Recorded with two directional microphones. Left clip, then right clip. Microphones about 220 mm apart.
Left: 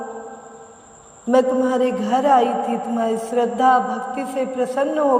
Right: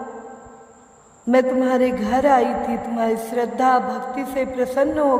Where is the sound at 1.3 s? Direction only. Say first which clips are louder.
Even; 20° right (ahead or behind).